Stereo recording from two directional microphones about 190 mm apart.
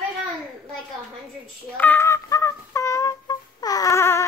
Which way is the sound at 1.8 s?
10° left (ahead or behind).